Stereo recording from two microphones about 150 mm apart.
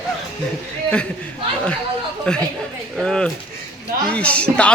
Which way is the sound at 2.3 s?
5° left (ahead or behind).